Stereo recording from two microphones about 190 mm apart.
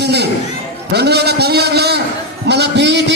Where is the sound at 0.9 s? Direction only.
60° right (ahead or behind).